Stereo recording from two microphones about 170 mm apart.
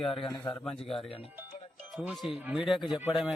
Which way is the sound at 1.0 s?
35° left (ahead or behind).